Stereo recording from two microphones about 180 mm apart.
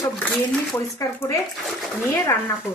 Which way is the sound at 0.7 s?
15° left (ahead or behind).